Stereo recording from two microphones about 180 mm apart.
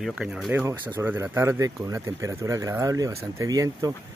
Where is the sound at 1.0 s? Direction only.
15° right (ahead or behind).